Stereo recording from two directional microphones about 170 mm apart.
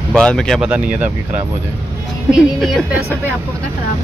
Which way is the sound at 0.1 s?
5° left (ahead or behind).